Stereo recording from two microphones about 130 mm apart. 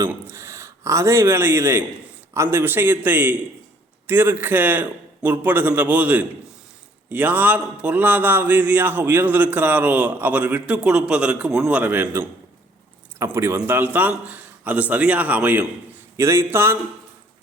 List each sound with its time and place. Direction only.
0.0 s a man's voice: 20° right (ahead or behind)